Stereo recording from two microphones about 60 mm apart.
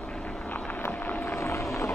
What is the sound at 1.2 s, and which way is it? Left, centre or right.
Vehicle, left.